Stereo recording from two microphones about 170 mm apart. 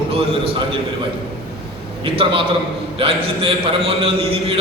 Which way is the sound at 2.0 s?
30° right (ahead or behind).